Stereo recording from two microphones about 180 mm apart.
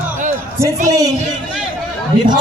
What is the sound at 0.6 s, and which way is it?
Speech, 20° right (ahead or behind).